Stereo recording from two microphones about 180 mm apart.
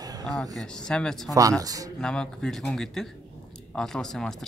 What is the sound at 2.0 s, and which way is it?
Speech, 5° left (ahead or behind).